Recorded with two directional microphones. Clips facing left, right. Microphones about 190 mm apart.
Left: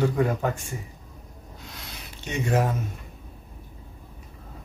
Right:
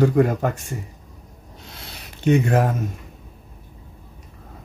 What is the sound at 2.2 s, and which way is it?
Speech, 55° right (ahead or behind).